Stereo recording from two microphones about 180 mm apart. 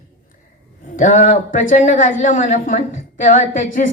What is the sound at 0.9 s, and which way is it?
A woman's voice, 45° left (ahead or behind).